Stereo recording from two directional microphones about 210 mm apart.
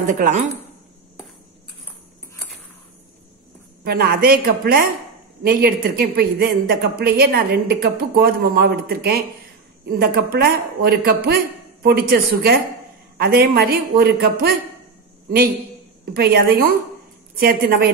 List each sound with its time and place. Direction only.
0.0 s speech: 40° right (ahead or behind)
3.8 s a woman's voice: 50° right (ahead or behind)